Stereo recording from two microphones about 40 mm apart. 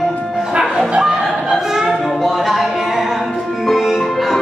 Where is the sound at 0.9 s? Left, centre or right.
Right.